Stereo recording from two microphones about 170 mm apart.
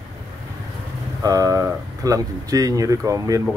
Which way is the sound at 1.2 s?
20° right (ahead or behind).